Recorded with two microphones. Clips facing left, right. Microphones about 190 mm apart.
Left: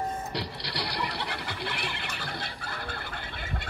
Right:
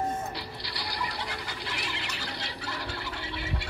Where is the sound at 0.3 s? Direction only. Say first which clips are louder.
Left 3 dB; 70° left (ahead or behind).